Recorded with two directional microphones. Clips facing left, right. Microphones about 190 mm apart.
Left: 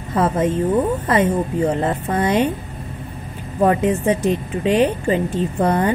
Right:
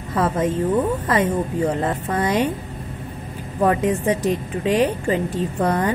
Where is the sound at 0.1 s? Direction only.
25° left (ahead or behind).